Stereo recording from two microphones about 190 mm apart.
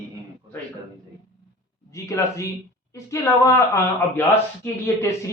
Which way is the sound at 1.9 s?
15° left (ahead or behind).